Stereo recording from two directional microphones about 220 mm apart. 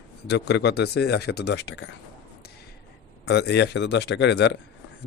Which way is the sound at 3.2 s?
50° left (ahead or behind).